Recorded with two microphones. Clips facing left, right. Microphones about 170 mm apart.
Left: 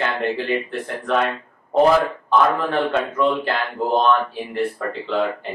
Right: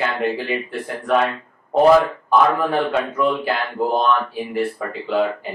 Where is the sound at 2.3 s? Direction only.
10° right (ahead or behind).